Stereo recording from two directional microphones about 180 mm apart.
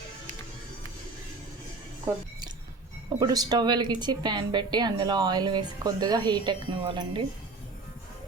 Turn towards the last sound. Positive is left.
turn(degrees=-30)  # may be behind; listen again after turning